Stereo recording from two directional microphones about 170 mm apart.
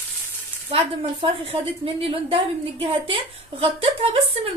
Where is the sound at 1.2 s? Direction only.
30° right (ahead or behind).